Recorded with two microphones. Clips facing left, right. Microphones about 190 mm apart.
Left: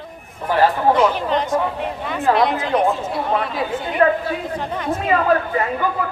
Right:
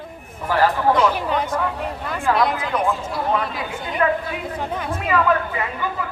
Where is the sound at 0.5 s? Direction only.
20° left (ahead or behind).